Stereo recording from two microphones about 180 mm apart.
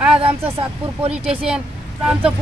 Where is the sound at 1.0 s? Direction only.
5° right (ahead or behind).